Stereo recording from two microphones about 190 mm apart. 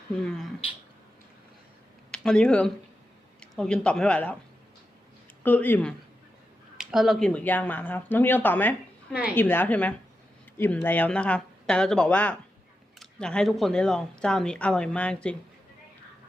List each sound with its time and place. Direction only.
0.3 s speech: 5° left (ahead or behind)
2.0 s speech: 5° left (ahead or behind)
5.4 s speech: 10° left (ahead or behind)